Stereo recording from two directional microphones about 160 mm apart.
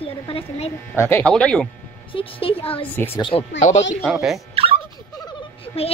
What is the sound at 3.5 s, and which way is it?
Speech, 50° left (ahead or behind).